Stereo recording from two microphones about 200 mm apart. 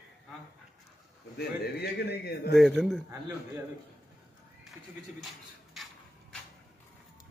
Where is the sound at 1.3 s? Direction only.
50° left (ahead or behind).